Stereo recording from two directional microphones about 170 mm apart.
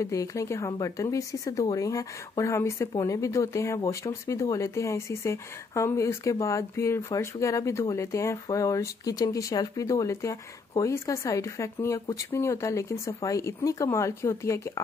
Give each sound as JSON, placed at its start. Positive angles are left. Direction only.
{"t": 0.0, "sound": "speech", "side_deg": 20}